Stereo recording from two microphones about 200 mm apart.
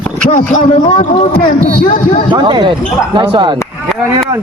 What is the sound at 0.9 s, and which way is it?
Speech, 25° left (ahead or behind).